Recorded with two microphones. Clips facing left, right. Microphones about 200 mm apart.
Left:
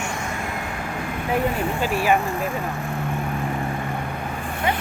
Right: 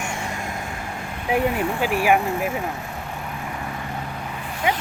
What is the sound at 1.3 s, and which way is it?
Speech, 15° right (ahead or behind).